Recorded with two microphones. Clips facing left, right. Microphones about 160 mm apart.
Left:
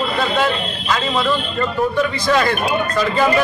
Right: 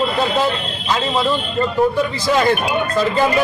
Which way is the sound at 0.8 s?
25° right (ahead or behind).